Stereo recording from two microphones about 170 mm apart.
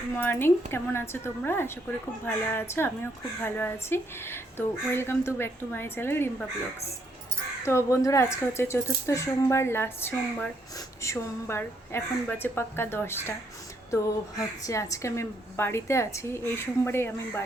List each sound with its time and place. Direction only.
0.2 s a woman's voice: 10° left (ahead or behind)
7.6 s a woman's voice: 15° left (ahead or behind)